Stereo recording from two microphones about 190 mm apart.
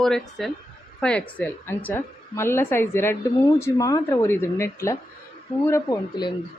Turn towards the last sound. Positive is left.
turn(degrees=20)  # may be behind; listen again after turning